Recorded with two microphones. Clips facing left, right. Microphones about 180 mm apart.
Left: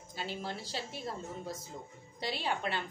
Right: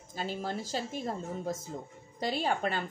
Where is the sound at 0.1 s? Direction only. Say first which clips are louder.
Right 4 dB; 45° right (ahead or behind).